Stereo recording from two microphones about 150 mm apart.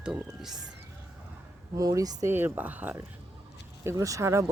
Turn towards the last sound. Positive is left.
turn(degrees=-20)  # may be behind; listen again after turning